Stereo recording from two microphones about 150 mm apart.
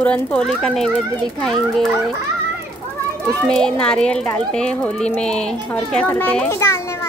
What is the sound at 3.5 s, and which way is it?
Speech, 5° left (ahead or behind).